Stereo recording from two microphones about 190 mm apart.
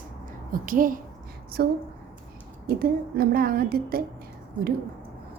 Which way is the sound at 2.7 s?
50° right (ahead or behind).